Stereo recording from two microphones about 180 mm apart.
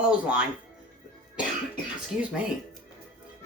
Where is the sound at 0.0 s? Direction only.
5° right (ahead or behind).